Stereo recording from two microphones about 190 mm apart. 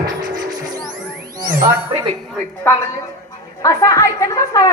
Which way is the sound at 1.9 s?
25° right (ahead or behind).